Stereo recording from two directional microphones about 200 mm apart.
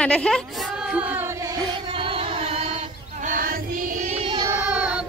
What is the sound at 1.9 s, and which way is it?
Female singing, 25° right (ahead or behind).